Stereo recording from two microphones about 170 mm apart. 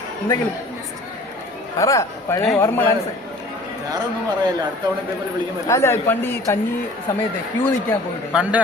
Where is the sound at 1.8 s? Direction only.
15° left (ahead or behind).